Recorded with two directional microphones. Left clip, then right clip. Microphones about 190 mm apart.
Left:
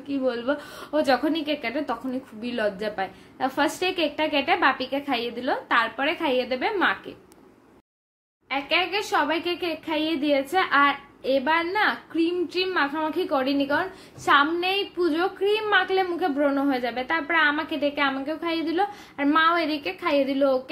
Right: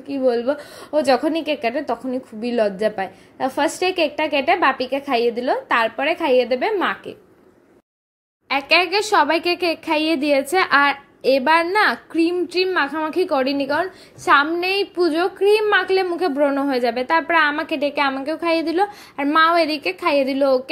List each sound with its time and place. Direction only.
0.1 s a woman's voice: 30° right (ahead or behind)
8.5 s a woman's voice: 50° right (ahead or behind)